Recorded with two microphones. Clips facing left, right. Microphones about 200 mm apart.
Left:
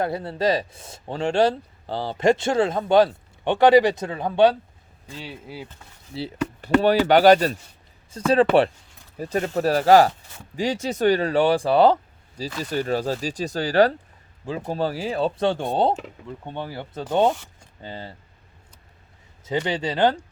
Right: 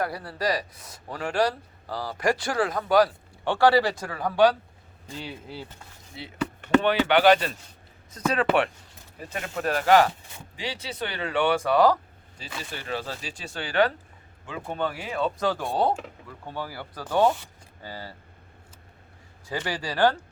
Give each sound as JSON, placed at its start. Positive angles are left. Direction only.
{"t": 0.0, "sound": "speech", "side_deg": 25}
{"t": 5.2, "sound": "speech", "side_deg": 5}
{"t": 6.1, "sound": "speech", "side_deg": 30}
{"t": 8.1, "sound": "speech", "side_deg": 30}
{"t": 10.6, "sound": "speech", "side_deg": 45}
{"t": 12.4, "sound": "speech", "side_deg": 40}
{"t": 19.5, "sound": "speech", "side_deg": 20}